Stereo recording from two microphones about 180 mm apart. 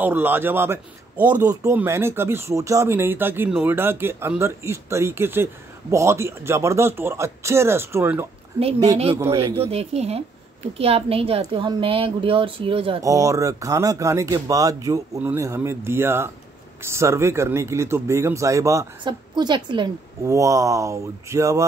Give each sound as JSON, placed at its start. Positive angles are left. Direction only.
{"t": 0.0, "sound": "a man's voice", "side_deg": -10}
{"t": 9.7, "sound": "a woman's voice", "side_deg": -35}